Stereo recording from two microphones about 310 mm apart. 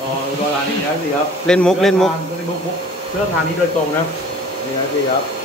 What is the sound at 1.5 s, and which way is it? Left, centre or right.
Speech, centre.